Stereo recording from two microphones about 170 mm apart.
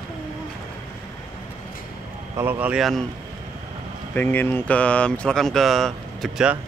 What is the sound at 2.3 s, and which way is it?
Speech, 10° right (ahead or behind).